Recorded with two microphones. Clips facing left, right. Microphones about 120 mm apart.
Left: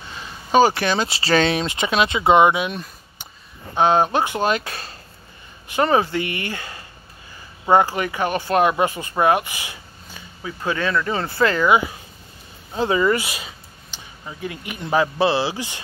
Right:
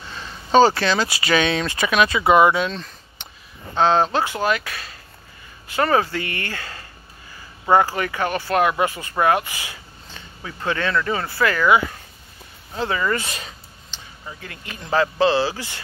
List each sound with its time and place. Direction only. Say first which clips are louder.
0.1 s speech: right 1 dB; 10° left (ahead or behind); by 4.9 s 30° left (ahead or behind)
5.7 s speech: left 1 dB; 20° left (ahead or behind)